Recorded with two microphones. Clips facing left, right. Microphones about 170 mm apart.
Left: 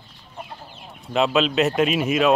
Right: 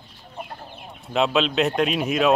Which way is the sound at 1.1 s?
Centre (ahead or behind).